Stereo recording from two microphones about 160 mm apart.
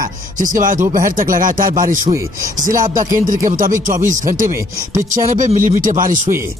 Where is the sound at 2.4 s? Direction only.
60° right (ahead or behind).